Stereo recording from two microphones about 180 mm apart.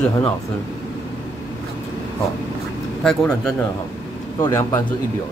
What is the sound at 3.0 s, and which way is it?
Speech, 5° left (ahead or behind).